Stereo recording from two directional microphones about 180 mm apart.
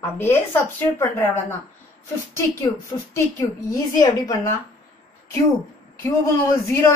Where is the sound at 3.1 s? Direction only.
15° left (ahead or behind).